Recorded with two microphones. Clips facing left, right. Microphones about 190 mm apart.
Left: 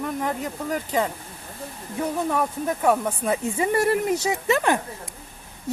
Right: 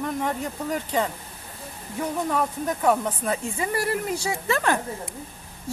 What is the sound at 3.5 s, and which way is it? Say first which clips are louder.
Speech: left 5 dB; 25° left (ahead or behind).